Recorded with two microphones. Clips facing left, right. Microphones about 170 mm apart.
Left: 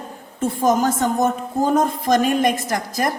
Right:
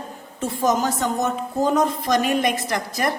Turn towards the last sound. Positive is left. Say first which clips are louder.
# left 2 dB
turn(degrees=45)  # may be behind; listen again after turning